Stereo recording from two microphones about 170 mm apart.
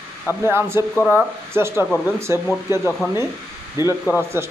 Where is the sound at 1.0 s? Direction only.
10° left (ahead or behind).